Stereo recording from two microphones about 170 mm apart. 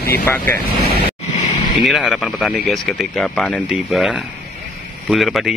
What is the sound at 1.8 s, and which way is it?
Speech, centre (ahead or behind).